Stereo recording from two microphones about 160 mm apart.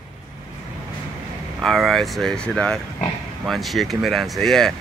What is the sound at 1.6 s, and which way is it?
A man's voice, centre (ahead or behind).